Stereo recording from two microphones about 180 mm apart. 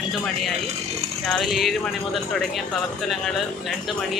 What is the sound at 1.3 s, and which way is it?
Speech, centre (ahead or behind).